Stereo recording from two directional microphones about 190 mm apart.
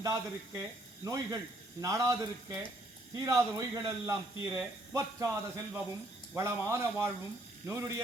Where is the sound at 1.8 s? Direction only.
20° right (ahead or behind).